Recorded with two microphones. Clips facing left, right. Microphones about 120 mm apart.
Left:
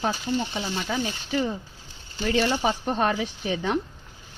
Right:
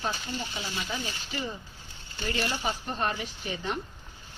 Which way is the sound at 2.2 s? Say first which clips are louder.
Left 8 dB; 85° left.